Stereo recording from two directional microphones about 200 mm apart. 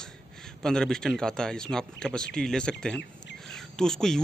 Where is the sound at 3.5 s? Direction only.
5° left (ahead or behind).